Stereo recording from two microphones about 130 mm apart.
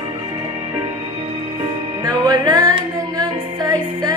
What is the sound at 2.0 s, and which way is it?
Music, 30° right (ahead or behind).